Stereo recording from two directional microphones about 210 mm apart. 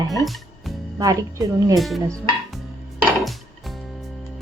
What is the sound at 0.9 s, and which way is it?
Speech, 15° right (ahead or behind).